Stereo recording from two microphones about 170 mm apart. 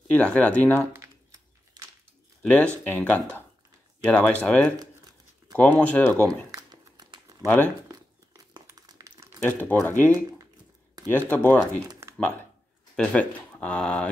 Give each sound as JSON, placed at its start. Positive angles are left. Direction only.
{"t": 0.1, "sound": "speech", "side_deg": 10}
{"t": 0.9, "sound": "a sound", "side_deg": -25}
{"t": 2.4, "sound": "speech", "side_deg": 5}
{"t": 6.5, "sound": "crumpling", "side_deg": -25}
{"t": 7.4, "sound": "speech", "side_deg": 10}
{"t": 8.5, "sound": "crumpling", "side_deg": -20}
{"t": 9.4, "sound": "speech", "side_deg": 10}
{"t": 11.9, "sound": "a sound", "side_deg": -15}
{"t": 12.2, "sound": "speech", "side_deg": 10}